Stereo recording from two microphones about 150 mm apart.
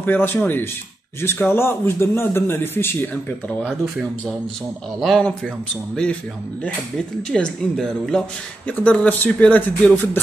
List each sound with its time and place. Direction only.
0.0 s speech: 15° left (ahead or behind)
5.0 s speech: 5° left (ahead or behind)
7.3 s speech: 5° left (ahead or behind)